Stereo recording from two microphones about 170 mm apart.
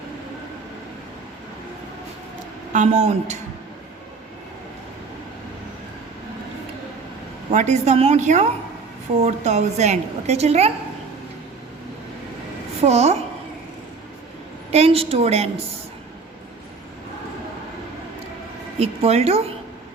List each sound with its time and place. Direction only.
2.7 s a woman's voice: 45° right (ahead or behind)
7.5 s a woman's voice: 45° right (ahead or behind)
12.8 s a woman's voice: 40° right (ahead or behind)
14.7 s a woman's voice: 35° right (ahead or behind)
18.8 s a woman's voice: 40° right (ahead or behind)